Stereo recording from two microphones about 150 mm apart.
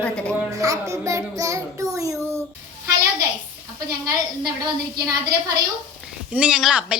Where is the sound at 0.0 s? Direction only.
5° left (ahead or behind).